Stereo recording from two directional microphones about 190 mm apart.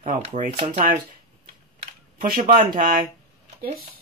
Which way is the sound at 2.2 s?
50° right (ahead or behind).